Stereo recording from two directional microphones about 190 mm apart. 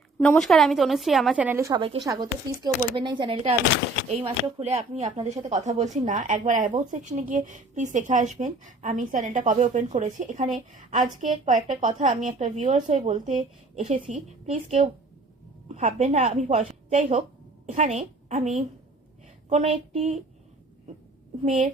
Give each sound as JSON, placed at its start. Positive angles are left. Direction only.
{"t": 0.2, "sound": "a woman's voice", "side_deg": 5}
{"t": 21.4, "sound": "speech", "side_deg": -40}